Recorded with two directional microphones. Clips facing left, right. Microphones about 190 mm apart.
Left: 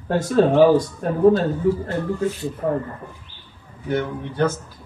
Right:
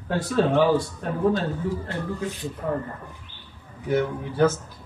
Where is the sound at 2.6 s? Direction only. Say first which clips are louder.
Left 5 dB; 50° left (ahead or behind).